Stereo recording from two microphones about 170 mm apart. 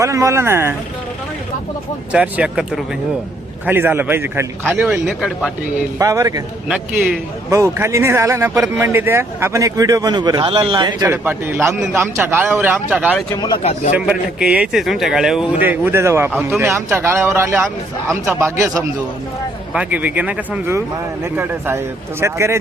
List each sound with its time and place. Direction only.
0.0 s speech: 20° right (ahead or behind)
2.1 s speech: 5° right (ahead or behind)
6.0 s a man's voice: 20° right (ahead or behind)
6.7 s speech: 5° right (ahead or behind)
7.5 s a man's voice: 15° right (ahead or behind)
13.3 s a man's voice: 25° left (ahead or behind)
13.6 s a man's voice: 40° left (ahead or behind)
13.9 s speech: 5° right (ahead or behind)